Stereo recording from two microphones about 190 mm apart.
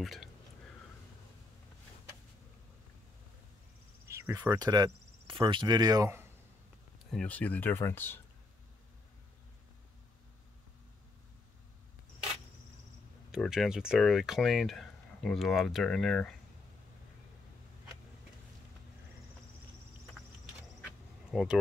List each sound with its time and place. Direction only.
0.0 s speech: centre (ahead or behind)
4.1 s speech: 15° right (ahead or behind)
7.1 s speech: 5° left (ahead or behind)
13.3 s speech: centre (ahead or behind)
21.3 s speech: 5° right (ahead or behind)